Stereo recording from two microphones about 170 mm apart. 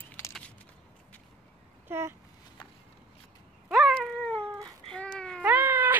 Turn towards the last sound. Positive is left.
turn(degrees=-10)  # may be behind; listen again after turning